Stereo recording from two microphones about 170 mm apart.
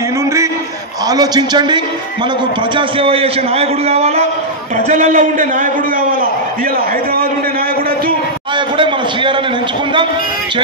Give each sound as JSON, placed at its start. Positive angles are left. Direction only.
{"t": 1.0, "sound": "a man's voice", "side_deg": -20}
{"t": 8.5, "sound": "a man's voice", "side_deg": -30}